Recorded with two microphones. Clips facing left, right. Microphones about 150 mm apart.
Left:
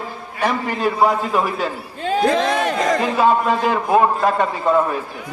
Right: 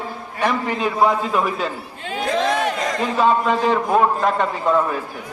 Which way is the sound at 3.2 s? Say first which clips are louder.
Right 1 dB; 5° left (ahead or behind).